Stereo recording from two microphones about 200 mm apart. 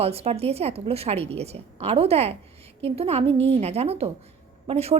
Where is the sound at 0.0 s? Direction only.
30° right (ahead or behind).